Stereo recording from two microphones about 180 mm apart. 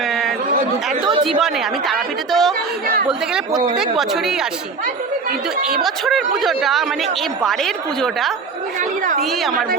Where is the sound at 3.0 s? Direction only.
5° right (ahead or behind).